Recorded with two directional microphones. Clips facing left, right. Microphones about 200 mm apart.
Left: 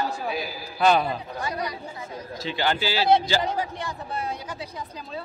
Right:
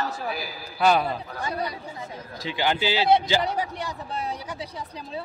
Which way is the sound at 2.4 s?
15° right (ahead or behind).